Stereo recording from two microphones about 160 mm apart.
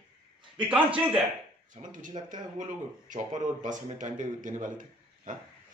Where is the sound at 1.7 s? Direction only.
55° right (ahead or behind).